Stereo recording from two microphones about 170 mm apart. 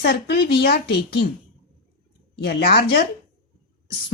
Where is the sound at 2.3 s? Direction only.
70° left (ahead or behind).